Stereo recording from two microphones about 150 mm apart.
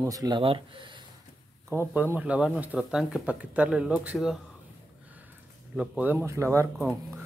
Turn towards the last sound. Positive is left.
turn(degrees=-20)  # may be behind; listen again after turning